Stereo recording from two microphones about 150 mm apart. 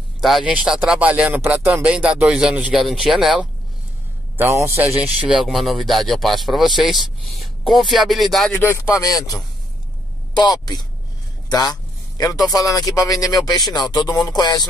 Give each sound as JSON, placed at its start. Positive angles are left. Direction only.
{"t": 0.2, "sound": "speech", "side_deg": 0}
{"t": 4.4, "sound": "speech", "side_deg": -15}
{"t": 8.5, "sound": "speech", "side_deg": 20}